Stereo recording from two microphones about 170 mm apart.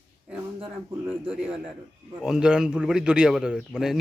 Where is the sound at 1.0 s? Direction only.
10° right (ahead or behind).